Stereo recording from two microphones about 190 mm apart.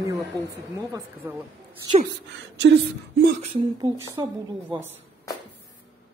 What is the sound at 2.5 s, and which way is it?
Speech, 60° right (ahead or behind).